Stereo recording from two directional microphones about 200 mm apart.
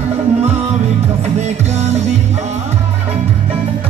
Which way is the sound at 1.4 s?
35° right (ahead or behind).